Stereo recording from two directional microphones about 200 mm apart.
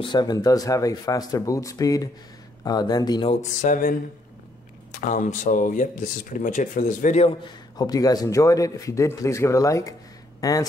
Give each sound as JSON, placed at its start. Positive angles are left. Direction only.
{"t": 0.0, "sound": "speech", "side_deg": 20}
{"t": 3.3, "sound": "speech", "side_deg": 40}
{"t": 5.0, "sound": "speech", "side_deg": 40}
{"t": 7.7, "sound": "speech", "side_deg": 20}